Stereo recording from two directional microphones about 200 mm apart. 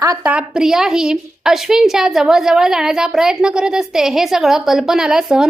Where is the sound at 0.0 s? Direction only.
10° right (ahead or behind).